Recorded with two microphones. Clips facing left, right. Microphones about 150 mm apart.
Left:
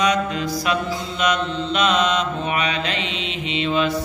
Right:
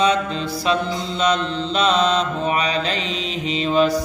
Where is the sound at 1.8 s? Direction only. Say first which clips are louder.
Right 2 dB; 30° right (ahead or behind).